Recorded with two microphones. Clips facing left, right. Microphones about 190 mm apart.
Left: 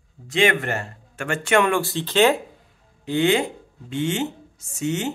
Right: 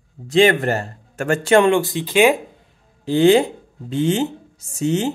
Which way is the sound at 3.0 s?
35° right (ahead or behind).